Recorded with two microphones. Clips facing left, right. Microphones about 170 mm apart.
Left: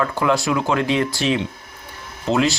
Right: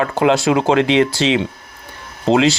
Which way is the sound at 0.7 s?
90° right.